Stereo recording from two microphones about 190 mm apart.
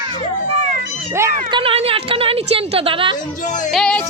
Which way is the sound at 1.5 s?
30° right (ahead or behind).